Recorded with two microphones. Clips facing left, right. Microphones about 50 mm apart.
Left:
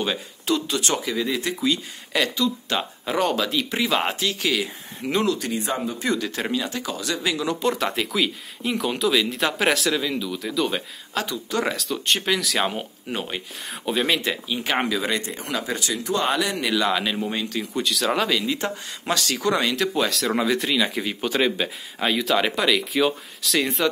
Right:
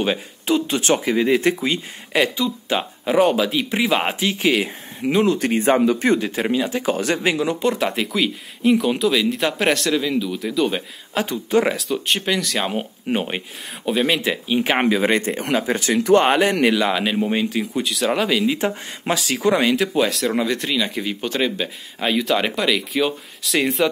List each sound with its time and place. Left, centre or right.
0.0 s speech: right
2.1 s speech: centre; by 6.2 s right
6.5 s speech: right
6.9 s speech: right
7.6 s speech: centre
11.2 s speech: right
11.7 s speech: centre
12.7 s speech: right
13.8 s speech: centre
14.3 s speech: centre
14.8 s speech: right
16.7 s speech: centre
17.7 s speech: centre
18.4 s speech: centre